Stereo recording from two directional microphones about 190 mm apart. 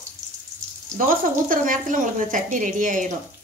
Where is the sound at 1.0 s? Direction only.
45° right (ahead or behind).